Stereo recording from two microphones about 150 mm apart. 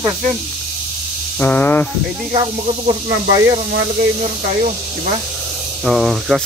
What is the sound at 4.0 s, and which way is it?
Speech, 55° right (ahead or behind).